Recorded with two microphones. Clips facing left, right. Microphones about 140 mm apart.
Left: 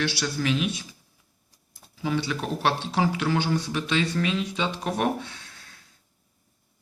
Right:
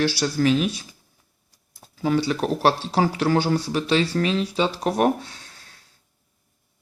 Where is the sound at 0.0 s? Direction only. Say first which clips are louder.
Right 6 dB; 40° right (ahead or behind).